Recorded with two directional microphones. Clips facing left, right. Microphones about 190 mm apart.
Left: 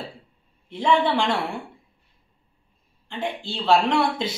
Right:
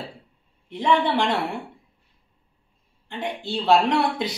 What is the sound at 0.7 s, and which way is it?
Speech, 15° right (ahead or behind).